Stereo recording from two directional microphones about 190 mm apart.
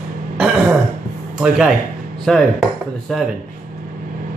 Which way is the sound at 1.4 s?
5° right (ahead or behind).